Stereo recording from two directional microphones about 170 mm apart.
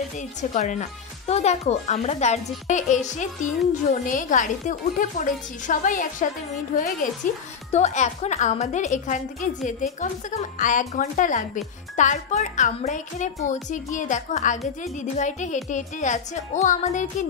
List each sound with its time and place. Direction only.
0.4 s a woman's voice: 45° left (ahead or behind)